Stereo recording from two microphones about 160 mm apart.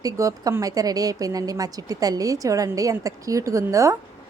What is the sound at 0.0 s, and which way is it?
A woman's voice, 20° right (ahead or behind).